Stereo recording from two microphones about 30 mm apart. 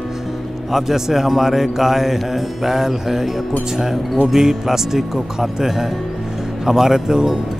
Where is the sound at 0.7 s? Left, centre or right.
Centre.